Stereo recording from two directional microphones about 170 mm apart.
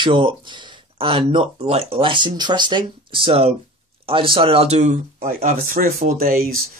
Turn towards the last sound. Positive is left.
turn(degrees=-60)  # may be behind; listen again after turning